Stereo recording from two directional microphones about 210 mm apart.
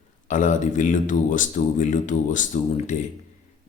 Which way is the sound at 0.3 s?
35° left (ahead or behind).